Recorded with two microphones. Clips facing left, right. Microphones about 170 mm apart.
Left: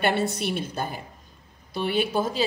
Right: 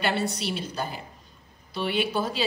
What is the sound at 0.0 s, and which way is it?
A woman's voice, 55° left (ahead or behind).